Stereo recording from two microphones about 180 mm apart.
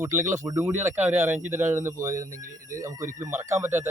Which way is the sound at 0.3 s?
15° right (ahead or behind).